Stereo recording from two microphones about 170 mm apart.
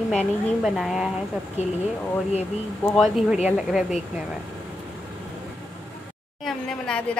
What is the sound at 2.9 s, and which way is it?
A woman's voice, 5° right (ahead or behind).